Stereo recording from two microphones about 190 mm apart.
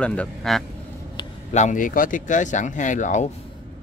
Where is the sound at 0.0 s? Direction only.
5° left (ahead or behind).